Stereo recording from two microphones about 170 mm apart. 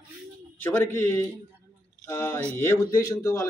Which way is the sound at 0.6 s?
15° left (ahead or behind).